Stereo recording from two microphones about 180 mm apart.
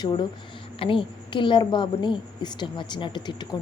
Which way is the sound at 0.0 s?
25° left (ahead or behind).